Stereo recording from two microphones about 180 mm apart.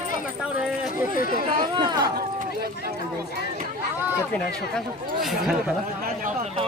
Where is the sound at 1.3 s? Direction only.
55° right (ahead or behind).